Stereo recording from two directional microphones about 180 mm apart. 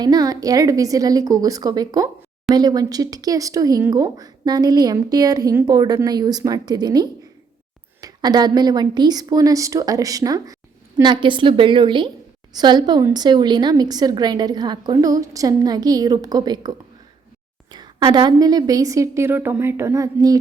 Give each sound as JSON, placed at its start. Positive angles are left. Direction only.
{"t": 0.0, "sound": "speech", "side_deg": -20}